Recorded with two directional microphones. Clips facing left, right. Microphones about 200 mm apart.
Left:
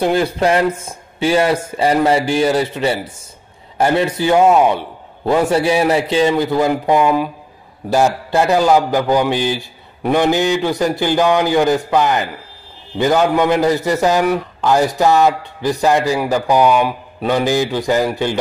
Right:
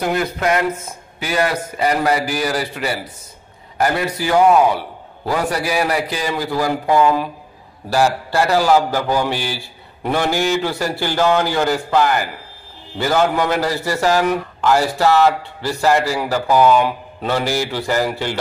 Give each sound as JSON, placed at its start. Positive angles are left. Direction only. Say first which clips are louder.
{"t": 0.0, "sound": "a man's voice", "louder": "left 4 dB", "side_deg": 30}